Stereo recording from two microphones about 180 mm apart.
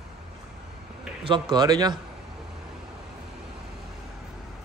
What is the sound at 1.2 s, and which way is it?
Speech, 25° right (ahead or behind).